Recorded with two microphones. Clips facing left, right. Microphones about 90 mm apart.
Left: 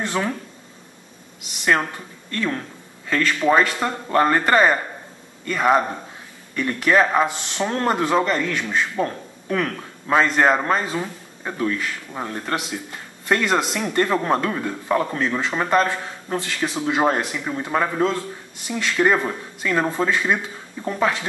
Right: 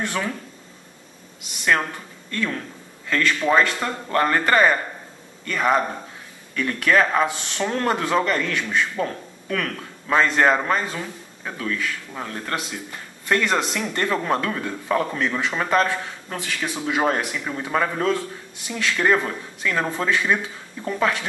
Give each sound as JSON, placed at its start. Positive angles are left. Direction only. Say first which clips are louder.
{"t": 0.0, "sound": "speech", "louder": "left 2 dB", "side_deg": 20}
{"t": 1.6, "sound": "speech", "louder": "left 1 dB", "side_deg": 10}
{"t": 3.1, "sound": "speech", "louder": "left 2 dB", "side_deg": 15}
{"t": 17.1, "sound": "speech", "louder": "left 1 dB", "side_deg": 5}